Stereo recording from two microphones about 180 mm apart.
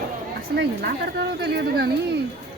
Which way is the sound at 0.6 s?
70° right (ahead or behind).